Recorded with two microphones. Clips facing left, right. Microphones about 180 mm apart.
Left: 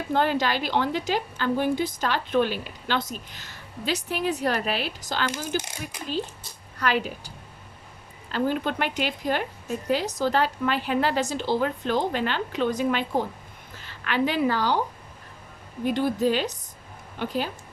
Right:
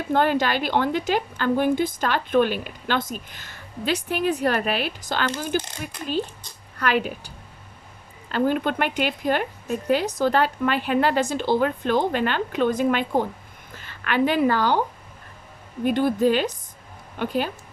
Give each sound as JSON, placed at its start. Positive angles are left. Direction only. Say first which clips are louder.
{"t": 0.1, "sound": "a woman's voice", "louder": "right 3 dB", "side_deg": -55}
{"t": 6.7, "sound": "speech", "louder": "right 2 dB", "side_deg": -55}
{"t": 8.3, "sound": "a woman's voice", "louder": "right 3 dB", "side_deg": -55}
{"t": 15.8, "sound": "a woman's voice", "louder": "right 3 dB", "side_deg": -55}